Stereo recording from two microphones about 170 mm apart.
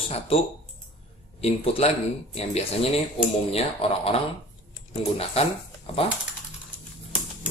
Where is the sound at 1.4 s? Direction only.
35° left (ahead or behind).